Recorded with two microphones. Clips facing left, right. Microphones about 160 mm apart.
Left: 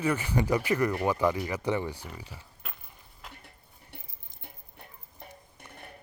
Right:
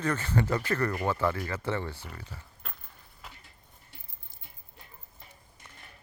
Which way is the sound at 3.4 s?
60° left (ahead or behind).